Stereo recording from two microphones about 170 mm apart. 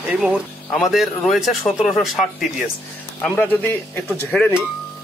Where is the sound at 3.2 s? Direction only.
10° left (ahead or behind).